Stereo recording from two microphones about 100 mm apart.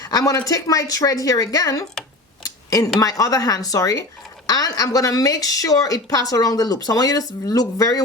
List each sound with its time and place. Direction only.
0.0 s speech: 40° left (ahead or behind)
2.4 s a sound: 35° left (ahead or behind)
3.0 s speech: 35° left (ahead or behind)